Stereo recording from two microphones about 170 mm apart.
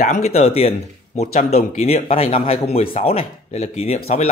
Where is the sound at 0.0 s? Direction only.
40° left (ahead or behind).